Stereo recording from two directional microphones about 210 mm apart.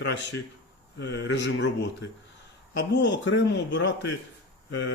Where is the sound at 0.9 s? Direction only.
55° left (ahead or behind).